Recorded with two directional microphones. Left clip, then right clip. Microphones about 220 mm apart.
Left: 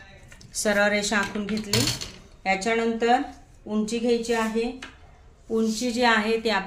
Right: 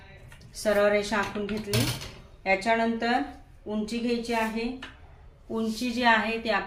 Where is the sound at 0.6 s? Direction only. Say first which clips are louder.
Left 1 dB; 40° left (ahead or behind).